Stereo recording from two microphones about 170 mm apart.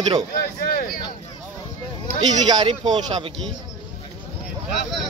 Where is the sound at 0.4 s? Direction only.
60° left (ahead or behind).